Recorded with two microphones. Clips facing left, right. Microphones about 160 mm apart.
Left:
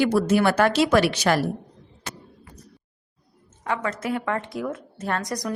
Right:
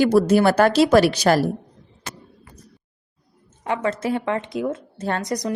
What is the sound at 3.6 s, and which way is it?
A woman's voice, 20° right (ahead or behind).